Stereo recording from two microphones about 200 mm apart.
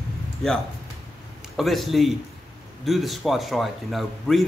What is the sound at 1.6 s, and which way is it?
A man's voice, centre (ahead or behind).